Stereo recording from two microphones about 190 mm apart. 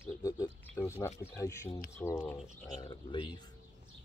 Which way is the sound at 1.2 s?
15° left (ahead or behind).